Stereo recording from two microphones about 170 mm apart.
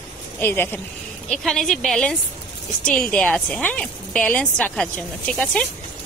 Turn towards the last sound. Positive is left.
turn(degrees=5)  # may be behind; listen again after turning